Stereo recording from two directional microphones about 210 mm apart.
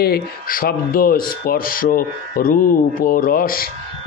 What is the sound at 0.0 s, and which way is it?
Speech, 45° left (ahead or behind).